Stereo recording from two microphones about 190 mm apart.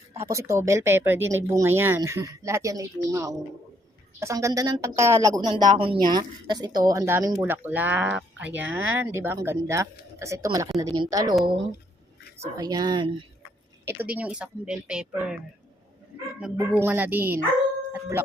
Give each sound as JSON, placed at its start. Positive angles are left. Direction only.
{"t": 0.3, "sound": "a woman's voice", "side_deg": -15}
{"t": 12.4, "sound": "a woman's voice", "side_deg": -20}
{"t": 13.8, "sound": "a woman's voice", "side_deg": -10}
{"t": 16.4, "sound": "speech", "side_deg": -10}